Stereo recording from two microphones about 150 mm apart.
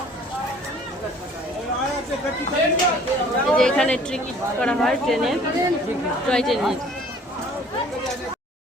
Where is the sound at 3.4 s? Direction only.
5° left (ahead or behind).